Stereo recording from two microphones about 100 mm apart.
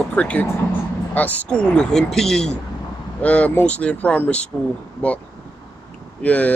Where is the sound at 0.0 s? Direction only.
15° left (ahead or behind).